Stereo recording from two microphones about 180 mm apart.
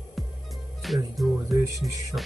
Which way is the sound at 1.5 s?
15° right (ahead or behind).